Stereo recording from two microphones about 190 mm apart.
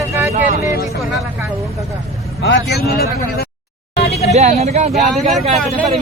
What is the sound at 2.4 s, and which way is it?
A man's voice, 65° left (ahead or behind).